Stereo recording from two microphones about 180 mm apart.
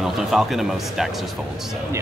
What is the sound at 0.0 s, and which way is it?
Speech, centre (ahead or behind).